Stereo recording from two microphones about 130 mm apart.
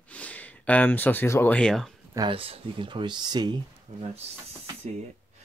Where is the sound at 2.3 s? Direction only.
45° right (ahead or behind).